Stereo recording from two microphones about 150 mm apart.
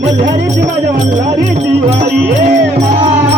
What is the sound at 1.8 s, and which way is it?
Music, 50° right (ahead or behind).